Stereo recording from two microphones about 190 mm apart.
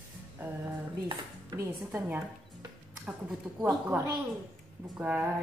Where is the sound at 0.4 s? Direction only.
10° right (ahead or behind).